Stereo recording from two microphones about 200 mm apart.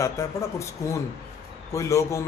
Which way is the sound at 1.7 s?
15° left (ahead or behind).